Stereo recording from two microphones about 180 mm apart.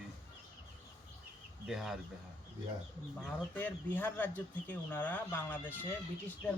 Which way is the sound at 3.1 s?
10° left (ahead or behind).